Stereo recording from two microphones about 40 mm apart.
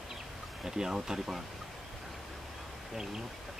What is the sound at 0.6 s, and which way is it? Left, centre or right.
Speech, centre.